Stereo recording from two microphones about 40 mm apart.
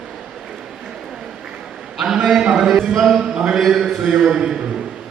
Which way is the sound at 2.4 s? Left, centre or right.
Centre.